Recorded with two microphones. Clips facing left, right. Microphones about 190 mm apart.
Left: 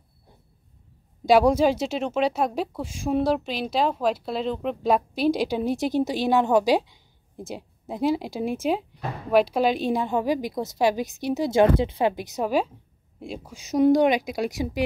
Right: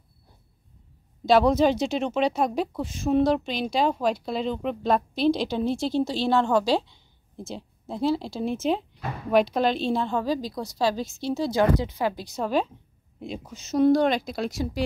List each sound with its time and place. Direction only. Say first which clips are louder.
1.2 s speech: left 1 dB; 10° left (ahead or behind)